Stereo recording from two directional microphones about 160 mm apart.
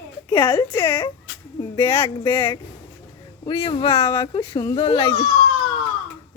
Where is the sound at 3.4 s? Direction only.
35° left (ahead or behind).